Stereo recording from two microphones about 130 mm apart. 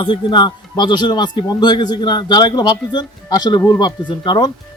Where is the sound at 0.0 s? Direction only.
35° left (ahead or behind).